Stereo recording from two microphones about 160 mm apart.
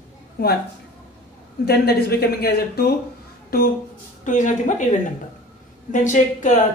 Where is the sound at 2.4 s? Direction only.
80° left.